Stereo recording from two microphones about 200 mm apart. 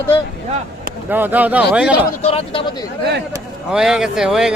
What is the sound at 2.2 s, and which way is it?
Speech, 30° left (ahead or behind).